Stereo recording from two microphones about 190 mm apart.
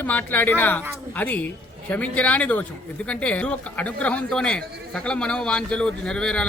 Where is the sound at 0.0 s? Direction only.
10° left (ahead or behind).